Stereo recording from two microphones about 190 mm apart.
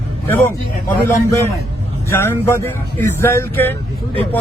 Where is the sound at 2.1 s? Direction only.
15° left (ahead or behind).